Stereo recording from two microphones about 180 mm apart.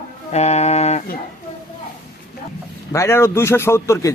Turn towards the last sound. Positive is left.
turn(degrees=15)  # may be behind; listen again after turning